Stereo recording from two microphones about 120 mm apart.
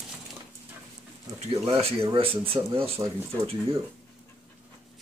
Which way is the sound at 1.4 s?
55° right (ahead or behind).